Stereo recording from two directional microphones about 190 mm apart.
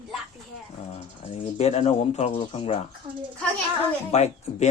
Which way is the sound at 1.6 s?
35° left (ahead or behind).